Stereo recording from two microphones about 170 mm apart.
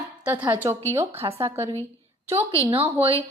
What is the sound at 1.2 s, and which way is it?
A woman's voice, 25° right (ahead or behind).